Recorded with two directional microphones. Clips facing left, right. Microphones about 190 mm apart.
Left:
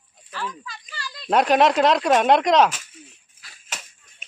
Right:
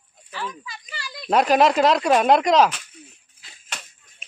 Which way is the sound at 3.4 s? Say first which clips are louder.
Even; 25° right (ahead or behind).